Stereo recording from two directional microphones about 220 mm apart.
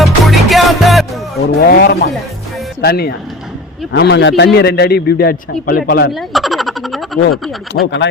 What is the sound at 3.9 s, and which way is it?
A man's voice, 50° left (ahead or behind).